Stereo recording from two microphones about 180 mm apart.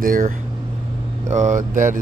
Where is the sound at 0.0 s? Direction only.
50° right (ahead or behind).